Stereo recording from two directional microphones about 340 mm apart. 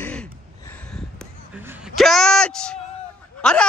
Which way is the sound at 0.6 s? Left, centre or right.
Centre.